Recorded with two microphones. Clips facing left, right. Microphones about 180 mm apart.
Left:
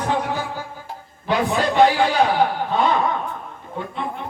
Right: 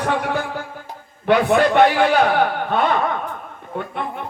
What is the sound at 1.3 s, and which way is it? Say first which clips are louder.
Speech: right 5 dB; 60° right (ahead or behind).